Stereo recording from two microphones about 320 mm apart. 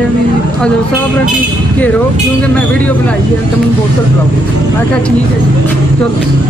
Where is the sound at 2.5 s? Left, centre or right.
Centre.